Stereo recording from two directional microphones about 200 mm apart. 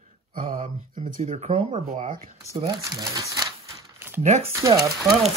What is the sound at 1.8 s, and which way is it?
Speech, 45° right (ahead or behind).